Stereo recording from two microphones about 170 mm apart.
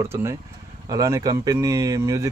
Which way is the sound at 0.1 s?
15° right (ahead or behind).